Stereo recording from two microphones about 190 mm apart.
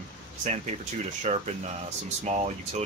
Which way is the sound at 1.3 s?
30° right (ahead or behind).